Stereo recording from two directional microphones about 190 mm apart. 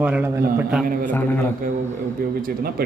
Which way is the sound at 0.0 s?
10° right (ahead or behind).